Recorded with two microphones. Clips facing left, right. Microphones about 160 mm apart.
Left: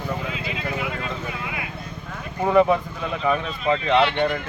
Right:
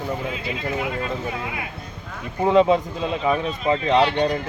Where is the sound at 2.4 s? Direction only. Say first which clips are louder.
Right 1 dB; 20° right (ahead or behind).